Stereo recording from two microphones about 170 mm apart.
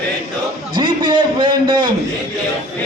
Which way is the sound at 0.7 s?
30° right (ahead or behind).